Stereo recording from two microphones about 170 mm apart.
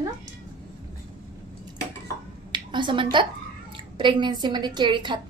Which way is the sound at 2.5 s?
25° right (ahead or behind).